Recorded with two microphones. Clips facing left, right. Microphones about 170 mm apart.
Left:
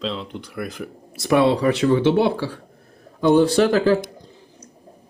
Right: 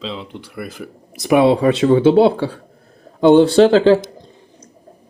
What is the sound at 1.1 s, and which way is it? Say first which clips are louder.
Speech: right 4 dB; 20° right (ahead or behind).